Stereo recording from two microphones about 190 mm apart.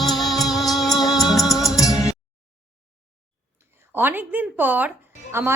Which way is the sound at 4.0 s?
10° right (ahead or behind).